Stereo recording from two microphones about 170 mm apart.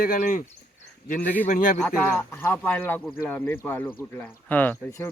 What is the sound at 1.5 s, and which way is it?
Speech, 50° left (ahead or behind).